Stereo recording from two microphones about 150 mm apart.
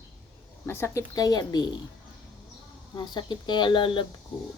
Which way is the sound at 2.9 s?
30° left (ahead or behind).